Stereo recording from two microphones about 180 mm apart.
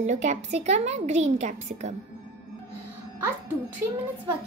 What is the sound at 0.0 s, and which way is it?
Speech, 40° right (ahead or behind).